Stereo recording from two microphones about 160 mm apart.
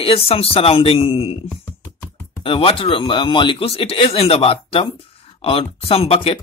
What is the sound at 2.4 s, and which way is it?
Speech, 35° left (ahead or behind).